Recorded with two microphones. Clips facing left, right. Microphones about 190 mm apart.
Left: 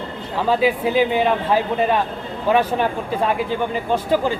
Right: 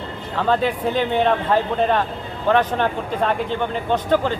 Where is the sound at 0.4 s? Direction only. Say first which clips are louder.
Left 2 dB; 5° left (ahead or behind).